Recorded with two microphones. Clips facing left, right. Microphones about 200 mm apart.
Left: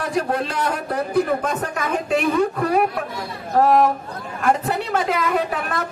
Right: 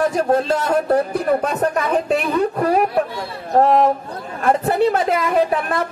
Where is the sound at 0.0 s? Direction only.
45° right (ahead or behind).